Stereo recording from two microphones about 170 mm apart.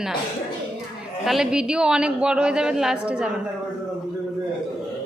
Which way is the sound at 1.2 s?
5° right (ahead or behind).